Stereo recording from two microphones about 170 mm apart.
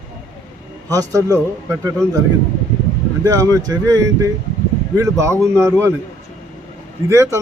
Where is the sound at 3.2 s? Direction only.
20° right (ahead or behind).